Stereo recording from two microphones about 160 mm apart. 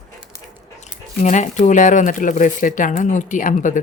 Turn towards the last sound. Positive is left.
turn(degrees=55)  # may be behind; listen again after turning